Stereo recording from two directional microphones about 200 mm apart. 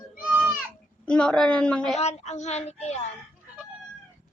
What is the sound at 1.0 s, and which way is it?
Speech, 5° left (ahead or behind).